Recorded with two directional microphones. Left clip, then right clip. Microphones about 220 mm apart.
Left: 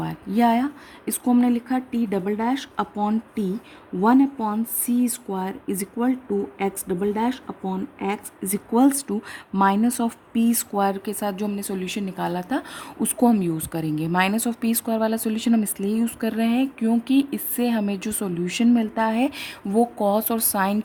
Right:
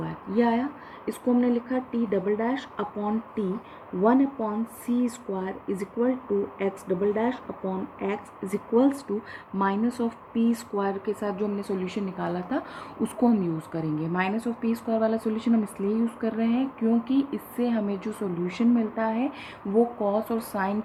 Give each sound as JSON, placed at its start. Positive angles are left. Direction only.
{"t": 0.0, "sound": "speech", "side_deg": 65}